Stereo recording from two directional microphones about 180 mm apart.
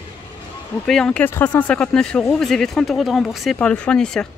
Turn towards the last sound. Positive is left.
turn(degrees=5)  # may be behind; listen again after turning